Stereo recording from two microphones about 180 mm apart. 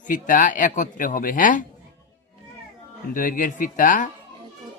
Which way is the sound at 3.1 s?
45° left (ahead or behind).